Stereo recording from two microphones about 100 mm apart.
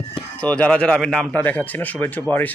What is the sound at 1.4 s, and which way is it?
Speech, 20° left (ahead or behind).